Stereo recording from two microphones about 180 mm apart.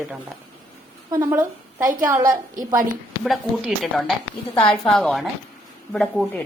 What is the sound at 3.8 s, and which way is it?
Speech, centre (ahead or behind).